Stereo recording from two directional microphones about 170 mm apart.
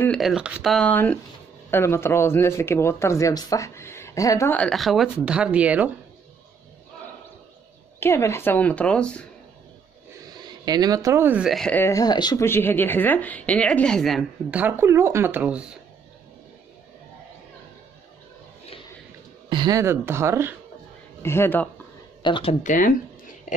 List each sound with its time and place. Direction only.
0.0 s speech: centre (ahead or behind)
8.0 s speech: 15° left (ahead or behind)
10.3 s speech: 25° right (ahead or behind); by 15.7 s 10° right (ahead or behind)
19.5 s speech: 25° right (ahead or behind)
21.2 s speech: 15° left (ahead or behind)
22.2 s speech: 30° left (ahead or behind); by 22.9 s 50° left (ahead or behind)